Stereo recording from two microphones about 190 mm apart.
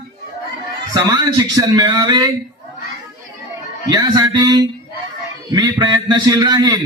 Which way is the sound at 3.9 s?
20° right (ahead or behind).